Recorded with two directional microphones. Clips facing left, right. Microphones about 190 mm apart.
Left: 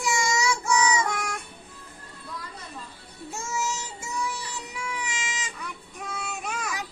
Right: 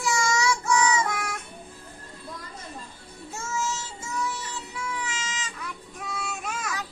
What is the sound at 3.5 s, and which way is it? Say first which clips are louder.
Music: right 1 dB; 15° left (ahead or behind).